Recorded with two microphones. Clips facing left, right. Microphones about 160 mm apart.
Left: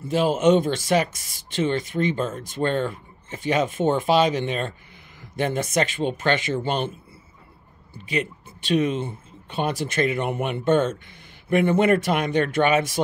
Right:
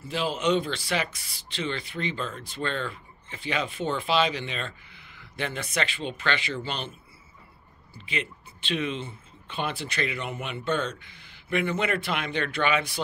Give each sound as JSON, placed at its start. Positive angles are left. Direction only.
{"t": 0.1, "sound": "speech", "side_deg": 45}
{"t": 7.9, "sound": "speech", "side_deg": 45}